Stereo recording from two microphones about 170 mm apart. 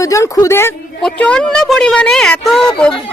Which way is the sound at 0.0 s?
20° left (ahead or behind).